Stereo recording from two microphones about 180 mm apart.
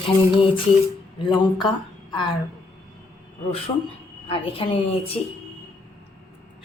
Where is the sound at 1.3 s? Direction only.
25° left (ahead or behind).